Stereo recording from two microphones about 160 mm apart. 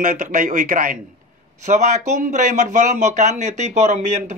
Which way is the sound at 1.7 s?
50° right (ahead or behind).